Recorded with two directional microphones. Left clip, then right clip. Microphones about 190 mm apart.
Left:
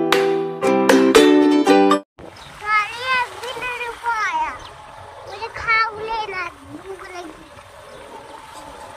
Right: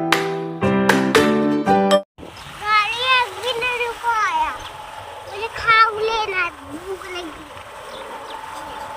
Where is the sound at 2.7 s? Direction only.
35° right (ahead or behind).